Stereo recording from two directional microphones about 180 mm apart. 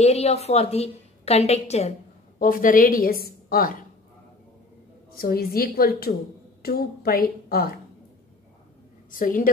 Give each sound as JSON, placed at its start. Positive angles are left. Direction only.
{"t": 0.0, "sound": "a woman's voice", "side_deg": 35}
{"t": 2.3, "sound": "a woman's voice", "side_deg": 50}
{"t": 5.1, "sound": "a woman's voice", "side_deg": 55}
{"t": 9.1, "sound": "a woman's voice", "side_deg": 50}